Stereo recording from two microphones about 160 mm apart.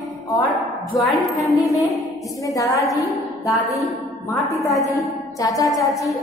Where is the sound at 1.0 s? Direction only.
Centre (ahead or behind).